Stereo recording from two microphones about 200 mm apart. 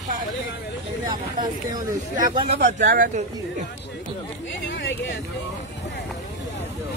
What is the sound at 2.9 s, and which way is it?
Speech, 40° right (ahead or behind).